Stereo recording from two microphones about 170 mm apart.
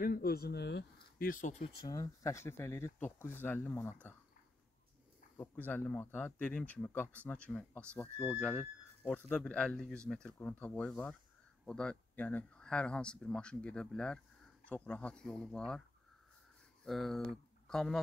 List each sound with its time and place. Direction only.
0.0 s speech: 60° left (ahead or behind)
1.8 s speech: 20° left (ahead or behind)
5.4 s speech: 10° left (ahead or behind)
16.8 s speech: centre (ahead or behind)